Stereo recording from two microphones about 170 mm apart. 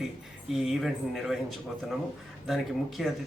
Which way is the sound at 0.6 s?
Centre (ahead or behind).